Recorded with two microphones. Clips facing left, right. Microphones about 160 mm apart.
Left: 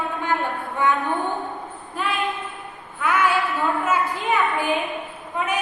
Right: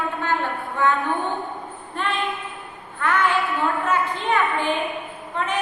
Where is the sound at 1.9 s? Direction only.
5° left (ahead or behind).